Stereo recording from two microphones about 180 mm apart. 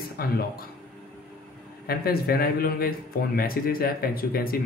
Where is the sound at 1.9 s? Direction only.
55° left (ahead or behind).